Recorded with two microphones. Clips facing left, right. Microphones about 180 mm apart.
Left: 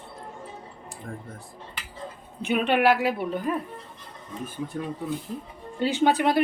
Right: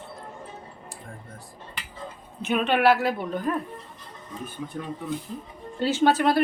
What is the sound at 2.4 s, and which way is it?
A woman's voice, 10° left (ahead or behind).